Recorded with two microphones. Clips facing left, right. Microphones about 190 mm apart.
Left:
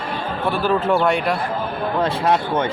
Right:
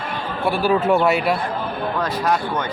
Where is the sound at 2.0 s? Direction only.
25° left (ahead or behind).